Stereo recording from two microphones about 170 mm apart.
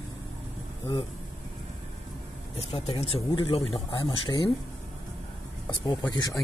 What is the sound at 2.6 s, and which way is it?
Speech, 35° left (ahead or behind).